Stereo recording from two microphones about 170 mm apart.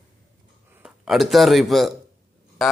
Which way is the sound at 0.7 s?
5° right (ahead or behind).